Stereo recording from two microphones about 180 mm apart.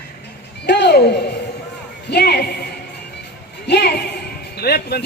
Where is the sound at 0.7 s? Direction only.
70° left (ahead or behind).